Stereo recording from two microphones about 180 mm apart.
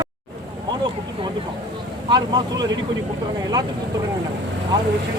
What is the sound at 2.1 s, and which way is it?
Speech, 25° right (ahead or behind).